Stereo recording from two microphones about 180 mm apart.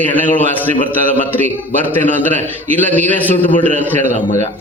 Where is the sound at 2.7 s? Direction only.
10° left (ahead or behind).